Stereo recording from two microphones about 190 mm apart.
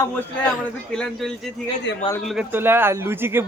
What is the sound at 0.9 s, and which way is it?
A man's voice, 5° left (ahead or behind).